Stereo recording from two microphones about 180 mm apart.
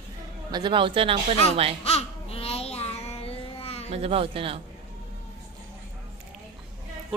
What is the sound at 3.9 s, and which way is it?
Speech, 35° right (ahead or behind).